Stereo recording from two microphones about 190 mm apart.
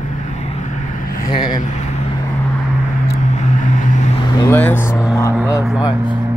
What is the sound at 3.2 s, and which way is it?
Vehicle, 40° left (ahead or behind).